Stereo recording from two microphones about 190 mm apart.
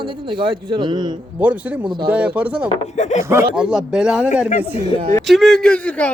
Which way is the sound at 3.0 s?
35° left (ahead or behind).